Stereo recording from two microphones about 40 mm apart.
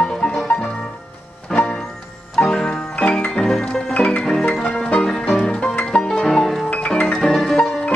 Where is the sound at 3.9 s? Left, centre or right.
Left.